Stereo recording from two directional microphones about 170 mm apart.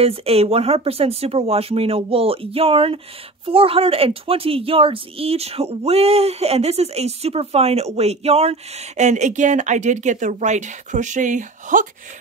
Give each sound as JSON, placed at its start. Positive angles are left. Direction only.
{"t": 0.0, "sound": "a woman's voice", "side_deg": -35}